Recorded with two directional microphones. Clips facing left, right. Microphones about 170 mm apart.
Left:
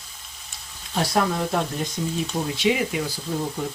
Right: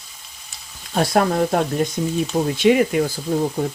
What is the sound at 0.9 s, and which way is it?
Speech, 50° right (ahead or behind).